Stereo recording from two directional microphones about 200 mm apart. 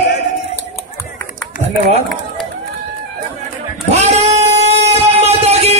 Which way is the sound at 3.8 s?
35° right (ahead or behind).